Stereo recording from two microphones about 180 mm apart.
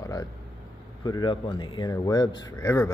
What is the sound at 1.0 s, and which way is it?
Speech, 25° left (ahead or behind).